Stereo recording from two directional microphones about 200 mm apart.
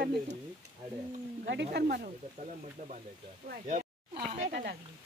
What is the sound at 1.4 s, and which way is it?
Speech, 60° right (ahead or behind).